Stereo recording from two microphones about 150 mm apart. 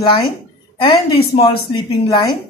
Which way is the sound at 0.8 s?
30° left (ahead or behind).